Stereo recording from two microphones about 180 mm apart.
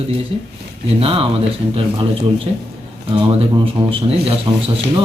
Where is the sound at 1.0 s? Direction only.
30° right (ahead or behind).